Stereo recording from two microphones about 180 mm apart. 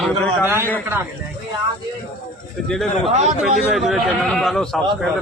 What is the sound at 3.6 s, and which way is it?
A man's voice, centre (ahead or behind).